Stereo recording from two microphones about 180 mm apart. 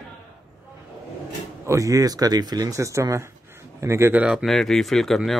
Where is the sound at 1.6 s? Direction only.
15° right (ahead or behind).